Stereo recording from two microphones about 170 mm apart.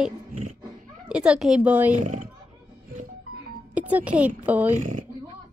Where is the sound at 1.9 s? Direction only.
50° right (ahead or behind).